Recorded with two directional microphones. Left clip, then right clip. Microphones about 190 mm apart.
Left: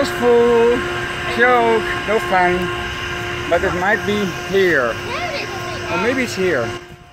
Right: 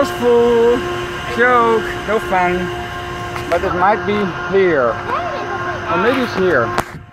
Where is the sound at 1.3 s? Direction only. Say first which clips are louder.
Right 1 dB; centre (ahead or behind).